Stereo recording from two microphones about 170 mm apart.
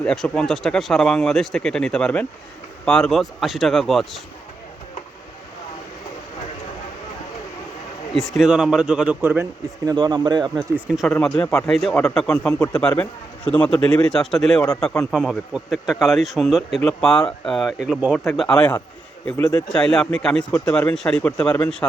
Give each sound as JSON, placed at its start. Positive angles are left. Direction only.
{"t": 0.0, "sound": "speech", "side_deg": 5}
{"t": 8.1, "sound": "speech", "side_deg": 0}
{"t": 9.8, "sound": "speech", "side_deg": -25}
{"t": 10.8, "sound": "speech", "side_deg": -5}